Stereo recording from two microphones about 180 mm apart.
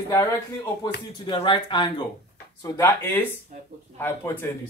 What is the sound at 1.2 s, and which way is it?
Speech, 30° left (ahead or behind).